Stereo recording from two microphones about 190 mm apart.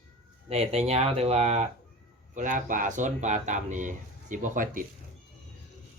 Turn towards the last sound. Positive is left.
turn(degrees=-45)  # may be behind; listen again after turning